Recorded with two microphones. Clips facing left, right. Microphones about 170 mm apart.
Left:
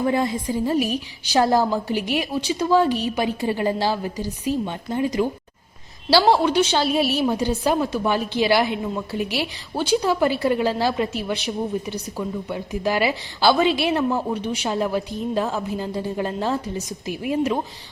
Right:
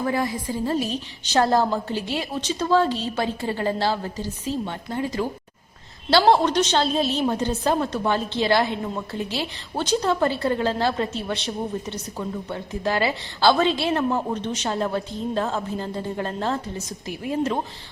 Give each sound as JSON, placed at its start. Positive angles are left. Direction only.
{"t": 0.0, "sound": "a woman's voice", "side_deg": 20}
{"t": 11.3, "sound": "speech", "side_deg": 0}
{"t": 12.8, "sound": "a woman's voice", "side_deg": 20}
{"t": 16.1, "sound": "a woman's voice", "side_deg": 15}